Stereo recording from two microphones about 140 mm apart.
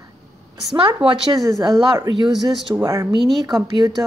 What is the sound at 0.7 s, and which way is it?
Speech, 35° right (ahead or behind).